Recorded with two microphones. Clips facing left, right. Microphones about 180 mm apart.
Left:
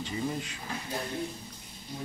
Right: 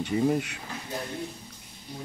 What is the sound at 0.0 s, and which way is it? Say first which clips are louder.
Speech: right 8 dB; 60° right (ahead or behind).